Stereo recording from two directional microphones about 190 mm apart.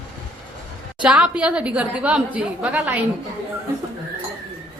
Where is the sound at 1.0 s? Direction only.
5° right (ahead or behind).